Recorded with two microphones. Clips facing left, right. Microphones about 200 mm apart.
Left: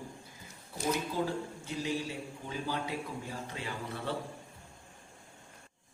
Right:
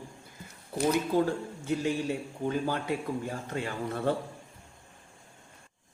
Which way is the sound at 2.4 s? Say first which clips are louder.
Right 7 dB; 55° right (ahead or behind).